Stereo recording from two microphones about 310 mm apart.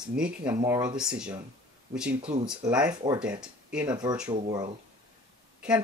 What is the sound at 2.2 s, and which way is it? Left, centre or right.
Speech, right.